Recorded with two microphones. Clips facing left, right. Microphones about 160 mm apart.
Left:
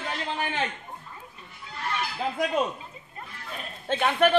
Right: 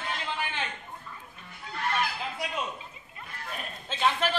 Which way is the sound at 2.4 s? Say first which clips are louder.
Left 10 dB; 40° left (ahead or behind).